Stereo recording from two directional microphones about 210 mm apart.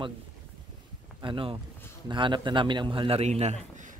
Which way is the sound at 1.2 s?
25° right (ahead or behind).